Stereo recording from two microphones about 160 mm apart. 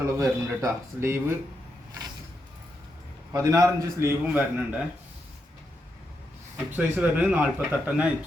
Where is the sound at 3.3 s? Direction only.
20° right (ahead or behind).